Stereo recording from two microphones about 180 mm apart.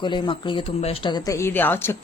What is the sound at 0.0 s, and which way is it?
A woman's voice, 25° left (ahead or behind).